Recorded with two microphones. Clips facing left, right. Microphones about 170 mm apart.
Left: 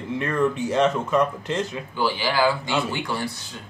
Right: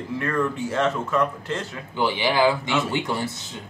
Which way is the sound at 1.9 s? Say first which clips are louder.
Right 3 dB; 20° right (ahead or behind).